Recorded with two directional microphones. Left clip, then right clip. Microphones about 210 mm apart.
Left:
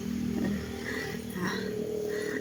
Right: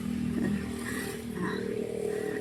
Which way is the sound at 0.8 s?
55° right (ahead or behind).